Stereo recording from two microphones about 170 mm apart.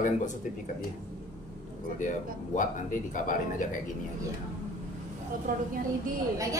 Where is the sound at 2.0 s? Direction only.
50° left (ahead or behind).